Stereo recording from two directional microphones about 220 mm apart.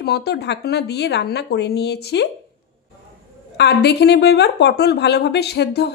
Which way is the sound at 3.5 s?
50° left (ahead or behind).